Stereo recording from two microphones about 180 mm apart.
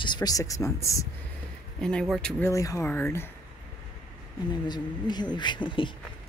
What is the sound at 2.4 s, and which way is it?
Speech, 20° left (ahead or behind).